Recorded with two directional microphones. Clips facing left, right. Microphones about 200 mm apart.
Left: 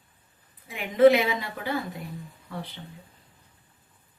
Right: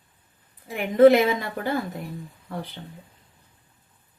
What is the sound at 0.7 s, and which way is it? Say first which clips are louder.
Speech: right 3 dB; 45° right (ahead or behind).